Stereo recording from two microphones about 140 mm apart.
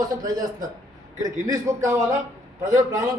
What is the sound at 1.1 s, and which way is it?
A man's voice, 25° right (ahead or behind).